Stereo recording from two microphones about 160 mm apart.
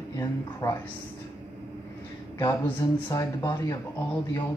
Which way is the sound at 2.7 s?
20° left (ahead or behind).